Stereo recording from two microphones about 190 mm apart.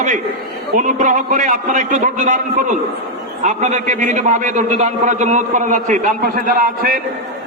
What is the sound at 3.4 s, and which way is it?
A man's voice, 40° right (ahead or behind).